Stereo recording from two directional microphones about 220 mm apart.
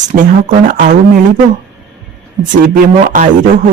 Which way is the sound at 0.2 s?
35° right (ahead or behind).